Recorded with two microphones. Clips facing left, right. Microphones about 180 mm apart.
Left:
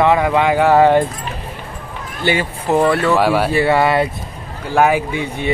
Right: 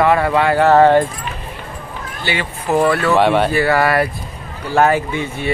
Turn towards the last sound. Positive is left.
turn(degrees=15)  # may be behind; listen again after turning